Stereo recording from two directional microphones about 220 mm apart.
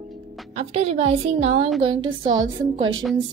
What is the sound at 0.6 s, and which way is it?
A woman's voice, 30° right (ahead or behind).